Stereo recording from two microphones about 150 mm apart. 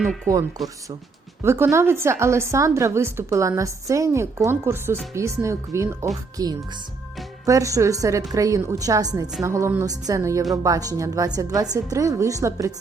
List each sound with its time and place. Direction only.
0.3 s a woman's voice: 20° right (ahead or behind)